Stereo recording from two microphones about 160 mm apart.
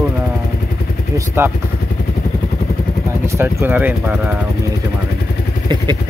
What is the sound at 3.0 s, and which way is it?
Vehicle, 15° right (ahead or behind).